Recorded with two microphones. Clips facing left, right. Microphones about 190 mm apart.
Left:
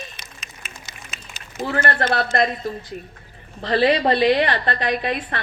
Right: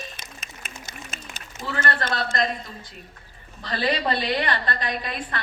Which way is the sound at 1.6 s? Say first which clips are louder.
Left 5 dB; 55° left (ahead or behind).